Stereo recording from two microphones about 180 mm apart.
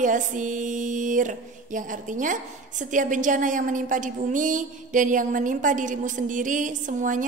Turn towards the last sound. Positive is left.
turn(degrees=-45)  # may be behind; listen again after turning